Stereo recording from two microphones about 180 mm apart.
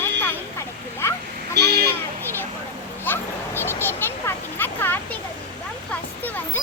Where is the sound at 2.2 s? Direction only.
10° left (ahead or behind).